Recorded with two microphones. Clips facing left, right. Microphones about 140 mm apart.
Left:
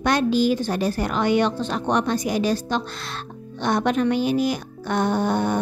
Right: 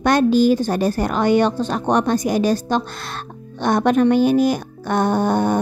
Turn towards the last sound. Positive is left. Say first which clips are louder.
# right 4 dB
turn(degrees=-45)  # may be behind; listen again after turning